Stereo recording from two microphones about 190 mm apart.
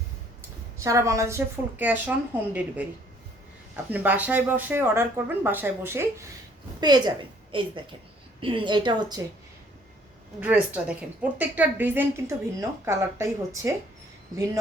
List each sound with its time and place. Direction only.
0.8 s a woman's voice: 15° right (ahead or behind)
3.9 s a woman's voice: 10° right (ahead or behind)
10.4 s a woman's voice: 5° right (ahead or behind)